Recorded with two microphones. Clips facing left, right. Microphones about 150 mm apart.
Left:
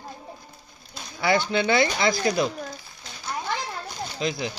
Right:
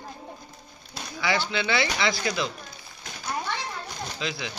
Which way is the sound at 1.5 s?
45° left (ahead or behind).